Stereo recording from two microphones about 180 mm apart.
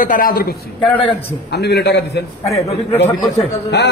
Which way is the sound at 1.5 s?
65° left (ahead or behind).